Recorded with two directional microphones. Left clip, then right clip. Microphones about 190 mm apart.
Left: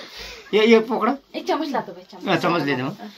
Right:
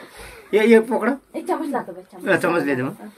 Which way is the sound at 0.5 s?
20° left (ahead or behind).